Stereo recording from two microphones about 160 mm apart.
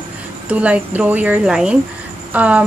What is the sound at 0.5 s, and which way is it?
A woman's voice, 10° right (ahead or behind).